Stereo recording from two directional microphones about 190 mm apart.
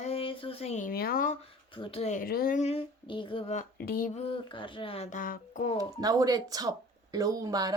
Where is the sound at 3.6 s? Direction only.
50° left (ahead or behind).